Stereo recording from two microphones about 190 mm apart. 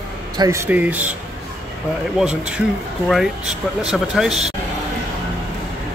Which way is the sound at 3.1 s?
5° right (ahead or behind).